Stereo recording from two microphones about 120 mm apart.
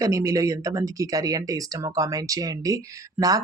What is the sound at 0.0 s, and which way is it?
Speech, 25° right (ahead or behind).